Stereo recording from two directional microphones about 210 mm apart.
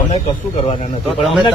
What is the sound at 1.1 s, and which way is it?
Speech, centre (ahead or behind).